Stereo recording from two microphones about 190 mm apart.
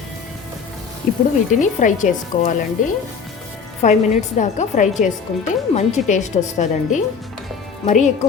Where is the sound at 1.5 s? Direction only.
40° left (ahead or behind).